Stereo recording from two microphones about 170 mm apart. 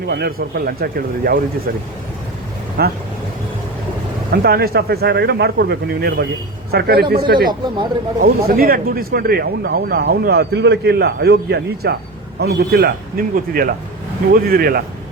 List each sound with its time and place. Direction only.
0.1 s speech: 65° right (ahead or behind)
2.8 s speech: 65° right (ahead or behind)
4.3 s speech: 65° right (ahead or behind)
13.3 s speech: 60° right (ahead or behind)